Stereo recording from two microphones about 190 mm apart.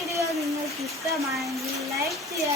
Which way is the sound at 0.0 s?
15° right (ahead or behind).